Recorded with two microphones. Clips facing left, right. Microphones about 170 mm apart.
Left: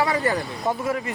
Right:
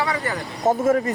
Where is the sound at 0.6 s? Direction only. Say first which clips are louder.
Right 11 dB; 45° right (ahead or behind).